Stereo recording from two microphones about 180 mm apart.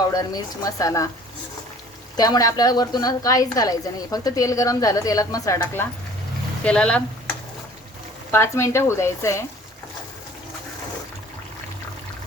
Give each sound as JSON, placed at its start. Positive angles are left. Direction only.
{"t": 0.0, "sound": "a woman's voice", "side_deg": 20}
{"t": 2.1, "sound": "a woman's voice", "side_deg": 20}
{"t": 8.3, "sound": "speech", "side_deg": 15}